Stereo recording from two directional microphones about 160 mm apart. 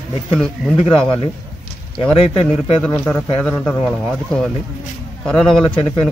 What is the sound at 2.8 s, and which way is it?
Speech, 10° left (ahead or behind).